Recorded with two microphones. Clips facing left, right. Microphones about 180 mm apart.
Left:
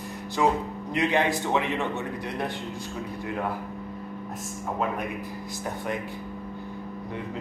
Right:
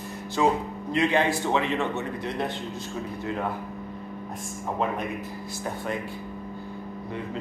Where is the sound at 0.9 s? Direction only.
15° left (ahead or behind).